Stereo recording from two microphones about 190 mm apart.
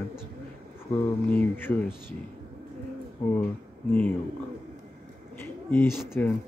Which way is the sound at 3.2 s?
10° left (ahead or behind).